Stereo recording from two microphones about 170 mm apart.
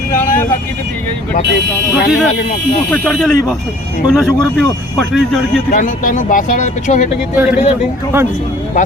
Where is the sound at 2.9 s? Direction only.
5° left (ahead or behind).